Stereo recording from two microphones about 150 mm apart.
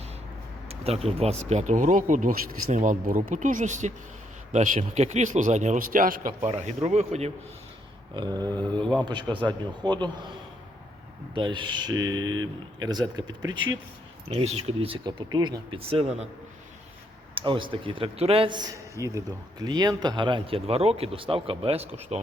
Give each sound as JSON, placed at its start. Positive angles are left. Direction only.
{"t": 0.7, "sound": "speech", "side_deg": -40}
{"t": 6.4, "sound": "speech", "side_deg": -50}
{"t": 8.1, "sound": "speech", "side_deg": -30}
{"t": 11.3, "sound": "speech", "side_deg": -30}
{"t": 14.3, "sound": "speech", "side_deg": -45}
{"t": 17.3, "sound": "speech", "side_deg": -35}
{"t": 18.9, "sound": "speech", "side_deg": -20}